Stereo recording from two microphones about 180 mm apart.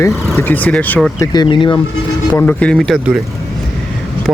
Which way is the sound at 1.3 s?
25° left (ahead or behind).